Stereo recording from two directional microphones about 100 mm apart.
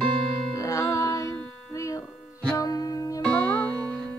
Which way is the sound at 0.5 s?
30° left (ahead or behind).